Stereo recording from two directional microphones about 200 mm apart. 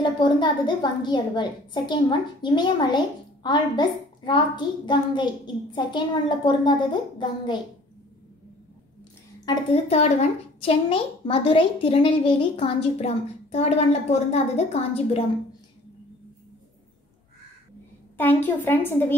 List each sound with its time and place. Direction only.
0.0 s a woman's voice: 25° left (ahead or behind)
9.5 s a woman's voice: 30° left (ahead or behind)
18.1 s a woman's voice: 10° left (ahead or behind)